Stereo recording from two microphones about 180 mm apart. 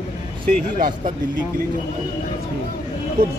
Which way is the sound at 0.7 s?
50° right (ahead or behind).